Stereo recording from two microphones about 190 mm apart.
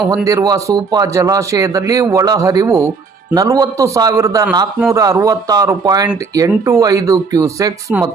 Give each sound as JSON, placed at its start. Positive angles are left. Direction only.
{"t": 0.3, "sound": "a man's voice", "side_deg": -20}